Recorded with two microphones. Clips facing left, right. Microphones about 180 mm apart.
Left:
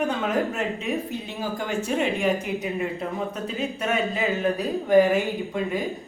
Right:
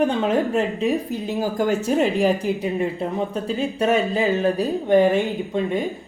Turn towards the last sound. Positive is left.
turn(degrees=-25)  # may be behind; listen again after turning